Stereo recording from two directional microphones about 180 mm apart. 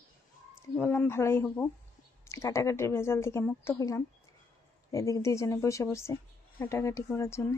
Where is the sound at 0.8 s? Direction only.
10° left (ahead or behind).